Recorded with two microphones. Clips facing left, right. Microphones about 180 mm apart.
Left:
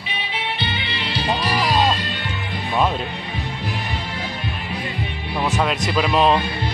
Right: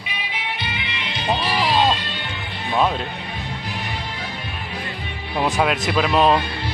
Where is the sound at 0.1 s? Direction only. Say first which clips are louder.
Left 3 dB; 30° left (ahead or behind).